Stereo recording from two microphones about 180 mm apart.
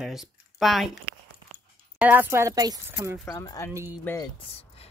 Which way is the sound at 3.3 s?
20° left (ahead or behind).